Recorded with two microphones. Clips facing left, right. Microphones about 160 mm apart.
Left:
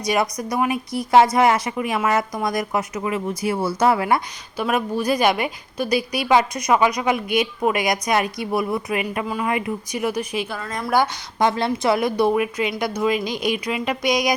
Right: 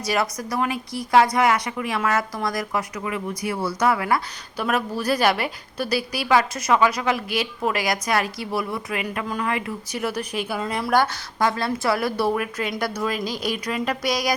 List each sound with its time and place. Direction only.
0.0 s a woman's voice: 20° left (ahead or behind)
4.5 s a woman's voice: 10° left (ahead or behind)
9.2 s a woman's voice: 10° left (ahead or behind)
9.5 s a woman's voice: 20° left (ahead or behind)
10.6 s a woman's voice: 10° right (ahead or behind)
10.9 s a woman's voice: 15° left (ahead or behind)
13.2 s speech: 35° right (ahead or behind)
13.5 s a woman's voice: 10° left (ahead or behind)